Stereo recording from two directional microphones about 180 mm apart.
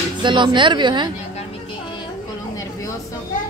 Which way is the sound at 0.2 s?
25° right (ahead or behind).